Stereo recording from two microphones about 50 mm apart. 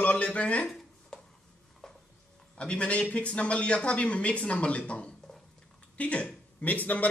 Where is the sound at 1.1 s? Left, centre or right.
Centre.